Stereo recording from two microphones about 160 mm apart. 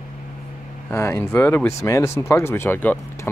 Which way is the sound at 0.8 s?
15° left (ahead or behind).